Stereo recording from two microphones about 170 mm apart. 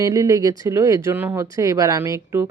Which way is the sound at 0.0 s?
20° right (ahead or behind).